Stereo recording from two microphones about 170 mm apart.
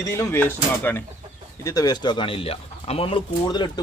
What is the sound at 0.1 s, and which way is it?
Speech, 15° left (ahead or behind).